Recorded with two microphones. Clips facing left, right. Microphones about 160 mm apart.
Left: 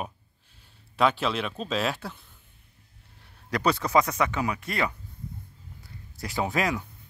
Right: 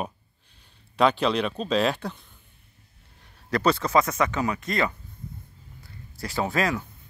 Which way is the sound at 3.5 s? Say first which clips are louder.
Right 2 dB; 10° left (ahead or behind).